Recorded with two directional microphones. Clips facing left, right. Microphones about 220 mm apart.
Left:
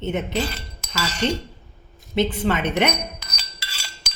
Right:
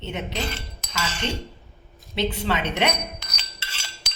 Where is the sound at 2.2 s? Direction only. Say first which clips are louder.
Left 4 dB; 50° left (ahead or behind).